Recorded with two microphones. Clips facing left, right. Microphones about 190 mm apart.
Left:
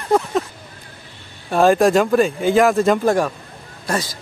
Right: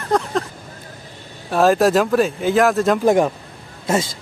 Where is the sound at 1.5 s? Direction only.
Centre (ahead or behind).